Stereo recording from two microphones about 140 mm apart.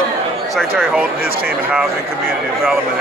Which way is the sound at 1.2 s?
90° right.